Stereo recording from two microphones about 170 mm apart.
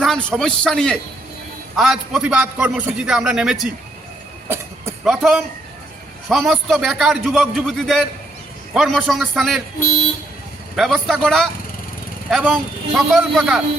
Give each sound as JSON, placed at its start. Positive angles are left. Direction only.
{"t": 0.0, "sound": "a man's voice", "side_deg": 5}
{"t": 4.4, "sound": "cough", "side_deg": -15}
{"t": 5.0, "sound": "a man's voice", "side_deg": 0}
{"t": 10.8, "sound": "a man's voice", "side_deg": 0}